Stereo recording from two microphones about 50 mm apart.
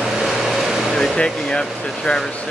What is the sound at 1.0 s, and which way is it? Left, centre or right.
Speech, centre.